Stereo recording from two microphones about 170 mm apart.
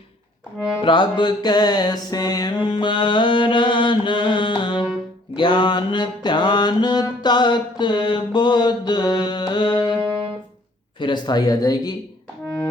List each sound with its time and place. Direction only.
0.8 s music: 30° left (ahead or behind)
4.8 s music: 5° right (ahead or behind)
5.4 s mantra: 25° left (ahead or behind)
11.0 s music: 25° left (ahead or behind)